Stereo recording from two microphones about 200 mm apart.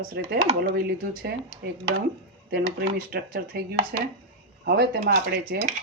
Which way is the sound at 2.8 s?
45° right (ahead or behind).